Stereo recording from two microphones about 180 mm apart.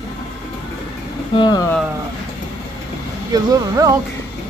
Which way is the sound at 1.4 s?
25° left (ahead or behind).